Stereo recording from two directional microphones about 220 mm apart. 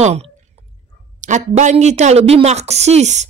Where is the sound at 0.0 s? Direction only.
30° right (ahead or behind).